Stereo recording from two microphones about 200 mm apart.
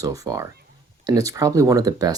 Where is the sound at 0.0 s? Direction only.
15° right (ahead or behind).